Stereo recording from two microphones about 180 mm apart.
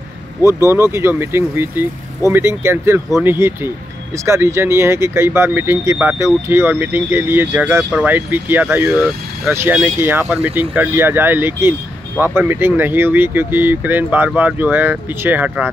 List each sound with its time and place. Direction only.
0.5 s speech: 15° right (ahead or behind)
3.1 s speech: 5° right (ahead or behind)
3.3 s speech: 15° right (ahead or behind)